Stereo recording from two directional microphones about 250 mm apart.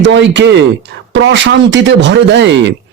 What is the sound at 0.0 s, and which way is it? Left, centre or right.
Speech, right.